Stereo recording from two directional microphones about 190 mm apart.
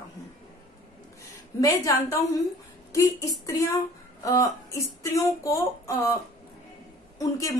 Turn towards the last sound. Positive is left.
turn(degrees=15)  # may be behind; listen again after turning